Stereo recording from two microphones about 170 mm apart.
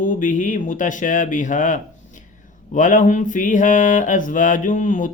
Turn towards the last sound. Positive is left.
turn(degrees=50)  # may be behind; listen again after turning